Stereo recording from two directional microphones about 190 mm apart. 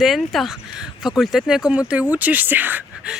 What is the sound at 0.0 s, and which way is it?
Speech, centre (ahead or behind).